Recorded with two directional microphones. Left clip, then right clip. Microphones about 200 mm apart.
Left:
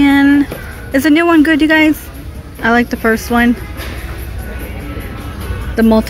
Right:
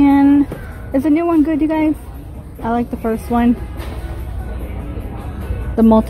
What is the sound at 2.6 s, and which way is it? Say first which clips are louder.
Speech: left 7 dB; 45° left (ahead or behind).